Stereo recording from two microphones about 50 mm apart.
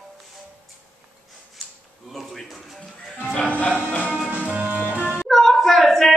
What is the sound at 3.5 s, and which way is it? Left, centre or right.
Music, left.